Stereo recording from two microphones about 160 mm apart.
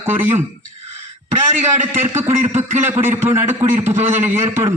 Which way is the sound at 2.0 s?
15° right (ahead or behind).